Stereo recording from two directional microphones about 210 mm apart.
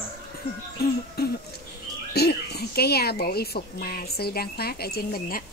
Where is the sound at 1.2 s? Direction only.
50° left (ahead or behind).